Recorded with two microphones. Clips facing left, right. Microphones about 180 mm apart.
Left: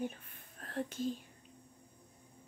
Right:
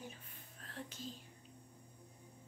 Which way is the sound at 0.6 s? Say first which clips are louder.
Left 11 dB; 55° left (ahead or behind).